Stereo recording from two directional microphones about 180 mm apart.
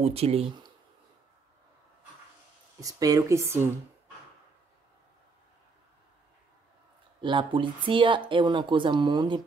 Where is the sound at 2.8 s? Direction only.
20° right (ahead or behind).